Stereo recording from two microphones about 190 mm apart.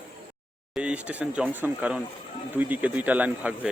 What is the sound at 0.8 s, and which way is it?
Speech, 5° right (ahead or behind).